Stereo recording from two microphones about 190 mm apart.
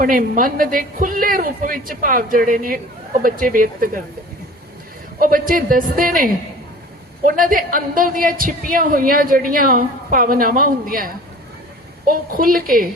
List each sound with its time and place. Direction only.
0.0 s a woman's voice: 45° right (ahead or behind)
5.2 s a woman's voice: 45° right (ahead or behind)